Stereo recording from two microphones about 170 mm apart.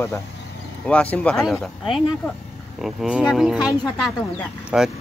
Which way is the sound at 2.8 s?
5° right (ahead or behind).